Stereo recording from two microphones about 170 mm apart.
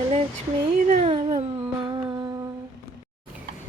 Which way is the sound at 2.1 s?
25° right (ahead or behind).